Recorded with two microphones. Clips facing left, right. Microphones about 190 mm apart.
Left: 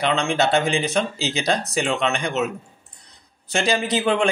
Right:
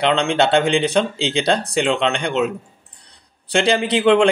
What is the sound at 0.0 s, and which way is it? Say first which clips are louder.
Speech: right 4 dB; 30° right (ahead or behind).